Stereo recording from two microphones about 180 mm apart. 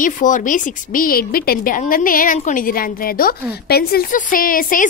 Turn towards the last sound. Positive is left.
turn(degrees=50)  # may be behind; listen again after turning